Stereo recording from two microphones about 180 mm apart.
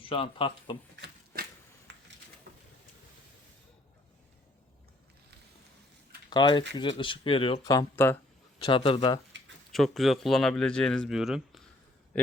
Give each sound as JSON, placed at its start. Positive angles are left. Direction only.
{"t": 0.0, "sound": "speech", "side_deg": 30}
{"t": 1.0, "sound": "a sound", "side_deg": -55}
{"t": 1.9, "sound": "a sound", "side_deg": -90}
{"t": 6.3, "sound": "speech", "side_deg": 25}
{"t": 7.6, "sound": "speech", "side_deg": 20}
{"t": 8.5, "sound": "speech", "side_deg": 30}
{"t": 9.7, "sound": "speech", "side_deg": 0}